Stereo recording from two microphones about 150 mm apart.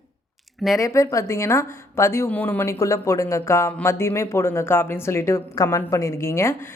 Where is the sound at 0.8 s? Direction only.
20° left (ahead or behind).